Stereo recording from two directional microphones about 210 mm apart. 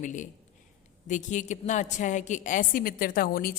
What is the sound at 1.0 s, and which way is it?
A woman's voice, 35° left (ahead or behind).